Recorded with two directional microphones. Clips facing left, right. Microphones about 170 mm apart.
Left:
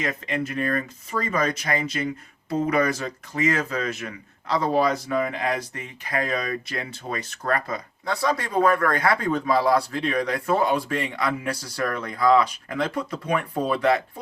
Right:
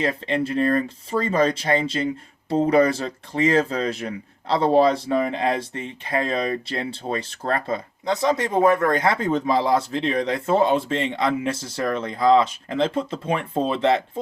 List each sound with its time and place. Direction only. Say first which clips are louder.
0.0 s speech: right 4 dB; 30° right (ahead or behind)